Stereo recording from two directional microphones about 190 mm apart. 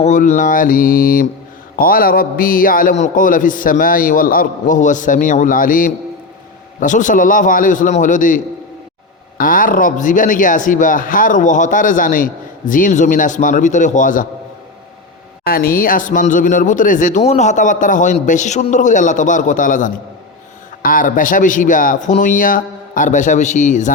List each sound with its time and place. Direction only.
0.0 s a man's voice: 40° left (ahead or behind)
9.4 s a man's voice: 45° left (ahead or behind)
15.4 s a man's voice: 50° left (ahead or behind)